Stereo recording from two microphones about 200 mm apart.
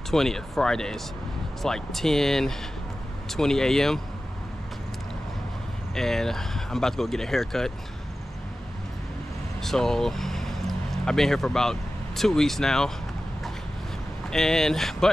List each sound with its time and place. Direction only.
0.1 s speech: centre (ahead or behind)
5.9 s speech: centre (ahead or behind)
9.6 s speech: centre (ahead or behind)
14.3 s speech: centre (ahead or behind)